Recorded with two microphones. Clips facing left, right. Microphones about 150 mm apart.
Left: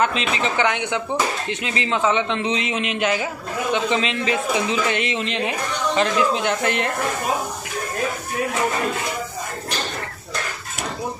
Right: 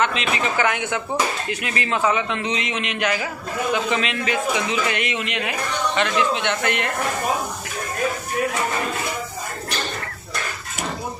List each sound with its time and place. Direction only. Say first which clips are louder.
0.0 s a man's voice: left 1 dB; 35° left (ahead or behind)
0.6 s a man's voice: left 1 dB; 20° left (ahead or behind)